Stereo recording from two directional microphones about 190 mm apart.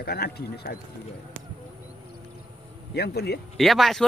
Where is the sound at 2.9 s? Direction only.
60° left (ahead or behind).